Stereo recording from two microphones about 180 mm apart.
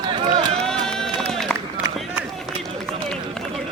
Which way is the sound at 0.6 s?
5° left (ahead or behind).